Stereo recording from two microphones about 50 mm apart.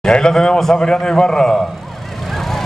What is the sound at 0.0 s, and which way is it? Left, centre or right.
A man's voice, centre.